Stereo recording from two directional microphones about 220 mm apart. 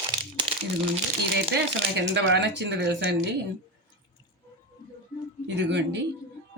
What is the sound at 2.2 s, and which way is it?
A woman's voice, 50° right (ahead or behind).